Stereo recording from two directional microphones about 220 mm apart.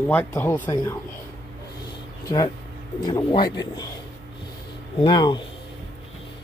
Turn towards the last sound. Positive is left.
turn(degrees=20)  # may be behind; listen again after turning